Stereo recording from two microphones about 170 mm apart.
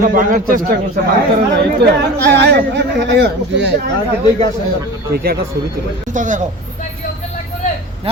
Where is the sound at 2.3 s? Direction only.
85° right.